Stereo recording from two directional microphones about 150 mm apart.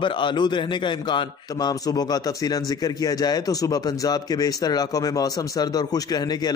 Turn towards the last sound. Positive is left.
turn(degrees=25)  # may be behind; listen again after turning